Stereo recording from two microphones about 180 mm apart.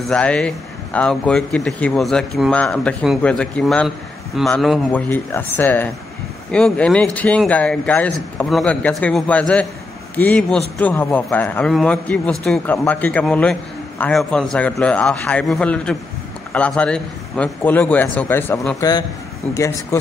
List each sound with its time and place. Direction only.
0.0 s speech: 5° left (ahead or behind)
4.9 s a man's voice: 10° left (ahead or behind)